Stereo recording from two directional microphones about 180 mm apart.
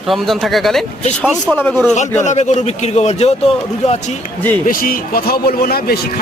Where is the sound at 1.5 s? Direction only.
10° left (ahead or behind).